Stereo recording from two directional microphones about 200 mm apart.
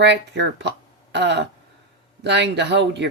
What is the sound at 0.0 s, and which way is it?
Speech, 60° right (ahead or behind).